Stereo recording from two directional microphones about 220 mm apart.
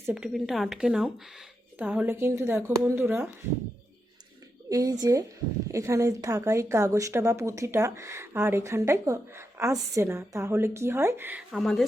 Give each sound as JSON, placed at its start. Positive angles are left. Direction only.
{"t": 0.0, "sound": "a woman's voice", "side_deg": -5}
{"t": 4.7, "sound": "a woman's voice", "side_deg": -15}